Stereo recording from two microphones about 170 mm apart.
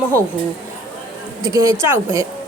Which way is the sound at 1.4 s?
15° right (ahead or behind).